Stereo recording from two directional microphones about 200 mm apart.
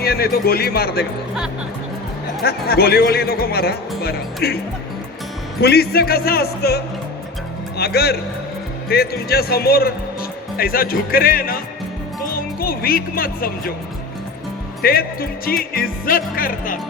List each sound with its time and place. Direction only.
0.0 s speech: 50° left (ahead or behind)
2.4 s speech: 50° left (ahead or behind)
14.8 s speech: 50° left (ahead or behind)